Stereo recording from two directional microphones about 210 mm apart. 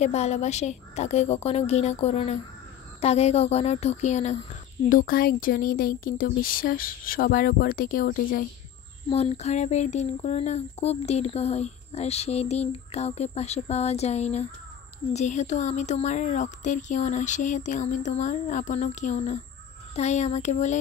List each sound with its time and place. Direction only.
0.0 s speech: 30° left (ahead or behind)
9.1 s speech: 30° left (ahead or behind)